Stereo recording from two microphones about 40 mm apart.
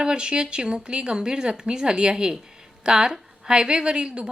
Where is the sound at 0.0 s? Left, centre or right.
Right.